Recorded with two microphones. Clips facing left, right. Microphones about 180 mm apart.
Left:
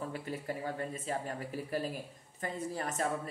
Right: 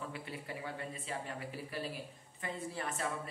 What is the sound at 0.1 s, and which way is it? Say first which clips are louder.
Speech: left 6 dB; 40° left (ahead or behind).